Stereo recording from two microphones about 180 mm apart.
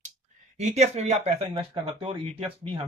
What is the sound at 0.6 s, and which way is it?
Speech, 40° right (ahead or behind).